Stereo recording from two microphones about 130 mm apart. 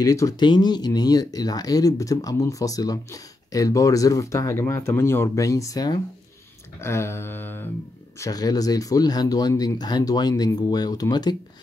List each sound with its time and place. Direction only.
0.0 s speech: 25° left (ahead or behind)
6.8 s a sound: 20° left (ahead or behind)
8.2 s speech: 30° left (ahead or behind)